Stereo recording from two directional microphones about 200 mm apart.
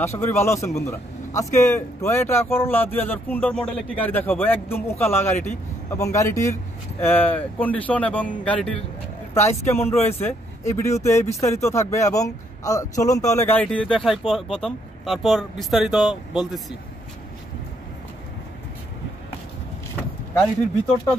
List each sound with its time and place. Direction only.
0.0 s speech: 15° left (ahead or behind)